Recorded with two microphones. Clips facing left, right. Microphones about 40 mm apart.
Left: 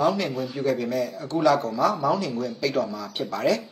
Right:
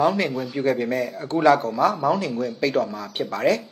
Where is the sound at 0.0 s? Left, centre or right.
Right.